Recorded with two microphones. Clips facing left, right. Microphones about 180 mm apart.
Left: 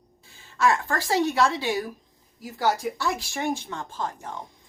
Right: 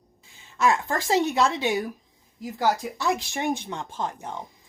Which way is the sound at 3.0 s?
20° right (ahead or behind).